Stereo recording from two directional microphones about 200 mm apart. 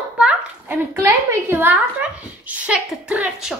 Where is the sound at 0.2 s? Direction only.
5° right (ahead or behind).